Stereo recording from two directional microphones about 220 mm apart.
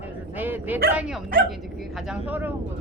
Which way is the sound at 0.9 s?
5° right (ahead or behind).